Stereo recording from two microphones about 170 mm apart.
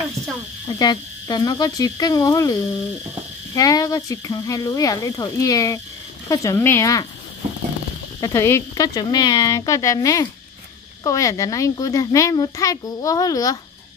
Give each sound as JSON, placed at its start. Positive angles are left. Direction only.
{"t": 0.7, "sound": "a child's voice", "side_deg": 25}
{"t": 8.2, "sound": "a child's voice", "side_deg": 15}